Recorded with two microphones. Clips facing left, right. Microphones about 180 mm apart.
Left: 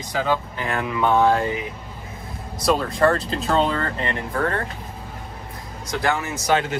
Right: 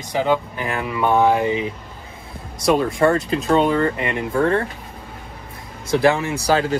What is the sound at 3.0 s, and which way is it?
Speech, centre (ahead or behind).